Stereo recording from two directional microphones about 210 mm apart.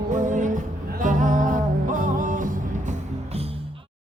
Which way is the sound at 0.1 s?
35° right (ahead or behind).